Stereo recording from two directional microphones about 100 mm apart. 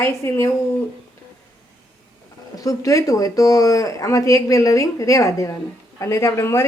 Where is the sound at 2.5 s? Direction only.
35° left (ahead or behind).